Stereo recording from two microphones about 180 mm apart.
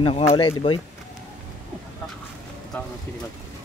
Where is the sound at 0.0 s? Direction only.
35° left (ahead or behind).